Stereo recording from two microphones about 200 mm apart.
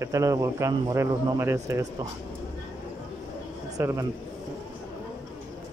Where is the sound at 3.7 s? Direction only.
15° right (ahead or behind).